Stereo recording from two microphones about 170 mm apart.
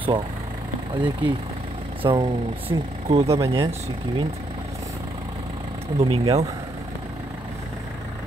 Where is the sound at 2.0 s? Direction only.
25° right (ahead or behind).